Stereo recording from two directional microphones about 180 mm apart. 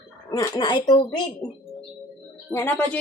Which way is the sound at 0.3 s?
20° left (ahead or behind).